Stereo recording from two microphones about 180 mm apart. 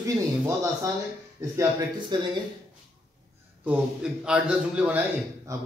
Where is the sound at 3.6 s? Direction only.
5° right (ahead or behind).